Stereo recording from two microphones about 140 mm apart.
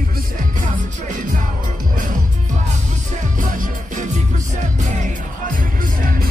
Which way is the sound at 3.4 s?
65° right (ahead or behind).